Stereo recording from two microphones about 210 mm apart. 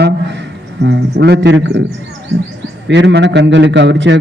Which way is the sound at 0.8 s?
55° right (ahead or behind).